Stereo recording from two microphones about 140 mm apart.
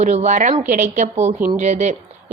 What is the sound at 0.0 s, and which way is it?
A woman's voice, 55° right (ahead or behind).